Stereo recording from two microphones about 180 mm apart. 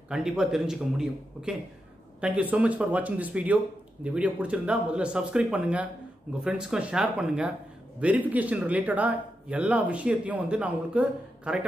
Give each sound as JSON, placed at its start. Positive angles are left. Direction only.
{"t": 0.1, "sound": "a man's voice", "side_deg": -5}